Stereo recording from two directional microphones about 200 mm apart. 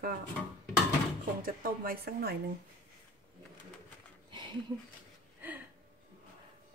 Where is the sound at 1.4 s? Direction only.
45° right (ahead or behind).